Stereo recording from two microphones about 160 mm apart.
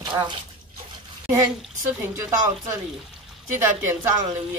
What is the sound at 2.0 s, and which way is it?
Speech, 20° right (ahead or behind).